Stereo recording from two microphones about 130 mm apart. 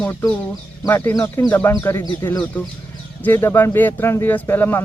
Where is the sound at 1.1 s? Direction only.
20° left (ahead or behind).